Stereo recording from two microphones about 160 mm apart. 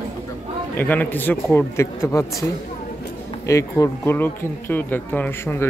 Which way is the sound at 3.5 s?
20° left (ahead or behind).